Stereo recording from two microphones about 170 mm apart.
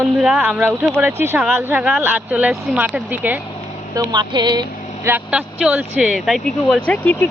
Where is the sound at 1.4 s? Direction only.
Centre (ahead or behind).